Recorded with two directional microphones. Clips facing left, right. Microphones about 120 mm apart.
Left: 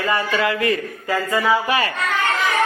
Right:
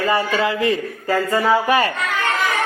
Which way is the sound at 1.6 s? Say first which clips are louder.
Right 4 dB; 45° right (ahead or behind).